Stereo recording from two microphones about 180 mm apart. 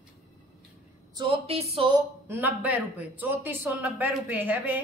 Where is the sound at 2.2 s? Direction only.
10° right (ahead or behind).